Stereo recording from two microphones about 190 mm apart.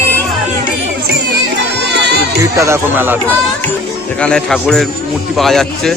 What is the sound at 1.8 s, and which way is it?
Music, 65° right (ahead or behind).